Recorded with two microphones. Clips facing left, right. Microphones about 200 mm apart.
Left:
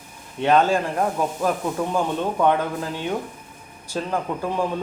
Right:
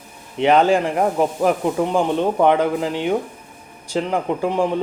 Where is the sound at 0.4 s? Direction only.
15° right (ahead or behind).